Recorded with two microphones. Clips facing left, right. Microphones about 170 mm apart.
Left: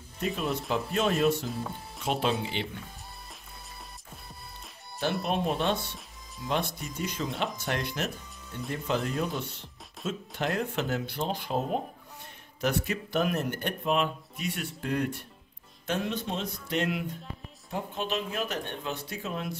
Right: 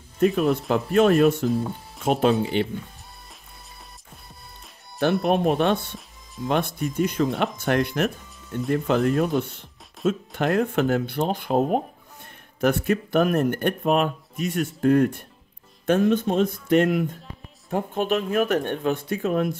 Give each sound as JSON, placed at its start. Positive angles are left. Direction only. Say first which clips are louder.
{"t": 0.2, "sound": "speech", "louder": "right 11 dB", "side_deg": -55}
{"t": 5.0, "sound": "speech", "louder": "right 8 dB", "side_deg": -55}